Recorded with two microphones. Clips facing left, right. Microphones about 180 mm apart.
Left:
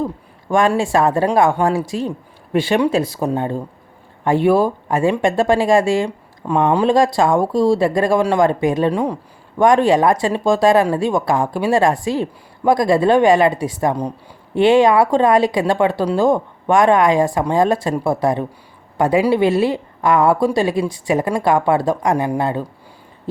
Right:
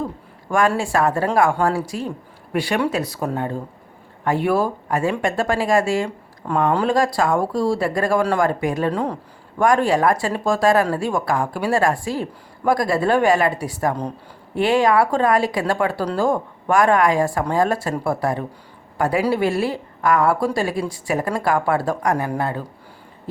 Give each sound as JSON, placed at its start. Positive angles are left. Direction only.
{"t": 0.5, "sound": "a woman's voice", "side_deg": 25}
{"t": 8.2, "sound": "a woman's voice", "side_deg": 15}
{"t": 8.9, "sound": "a woman's voice", "side_deg": 15}